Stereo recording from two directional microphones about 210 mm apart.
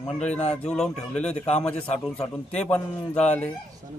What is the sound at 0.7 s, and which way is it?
Speech, 5° left (ahead or behind).